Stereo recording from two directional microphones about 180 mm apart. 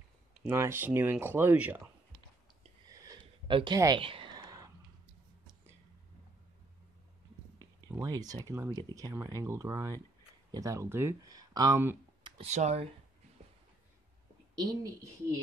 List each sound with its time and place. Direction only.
0.5 s speech: 15° right (ahead or behind)
3.1 s a sound: 25° right (ahead or behind)
7.5 s speech: 20° right (ahead or behind)
12.2 s a sound: 25° right (ahead or behind)
12.4 s speech: 40° right (ahead or behind)
14.5 s a woman's voice: 20° right (ahead or behind)